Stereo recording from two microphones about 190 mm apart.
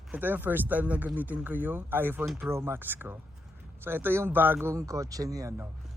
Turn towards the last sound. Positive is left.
turn(degrees=-15)  # may be behind; listen again after turning